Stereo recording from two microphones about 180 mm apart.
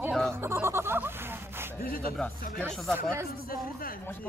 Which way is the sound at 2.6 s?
Centre (ahead or behind).